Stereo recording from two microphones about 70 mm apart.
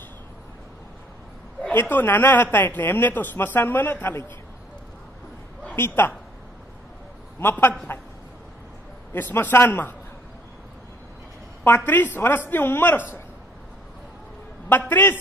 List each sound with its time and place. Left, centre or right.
1.6 s a woman's voice: left
5.8 s a woman's voice: left
7.4 s a woman's voice: left
9.1 s a woman's voice: left
11.6 s a woman's voice: left
14.9 s a woman's voice: left